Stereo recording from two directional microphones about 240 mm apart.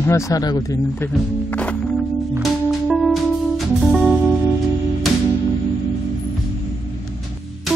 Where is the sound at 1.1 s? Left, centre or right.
Centre.